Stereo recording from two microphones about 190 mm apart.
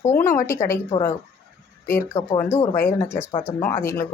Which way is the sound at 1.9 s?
15° left (ahead or behind).